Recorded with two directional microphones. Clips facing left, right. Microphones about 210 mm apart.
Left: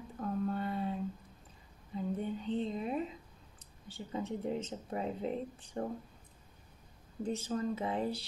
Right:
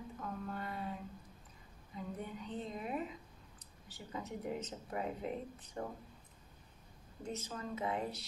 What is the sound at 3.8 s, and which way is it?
Speech, 25° left (ahead or behind).